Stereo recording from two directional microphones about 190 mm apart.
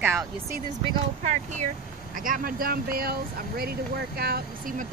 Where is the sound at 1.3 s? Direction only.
40° right (ahead or behind).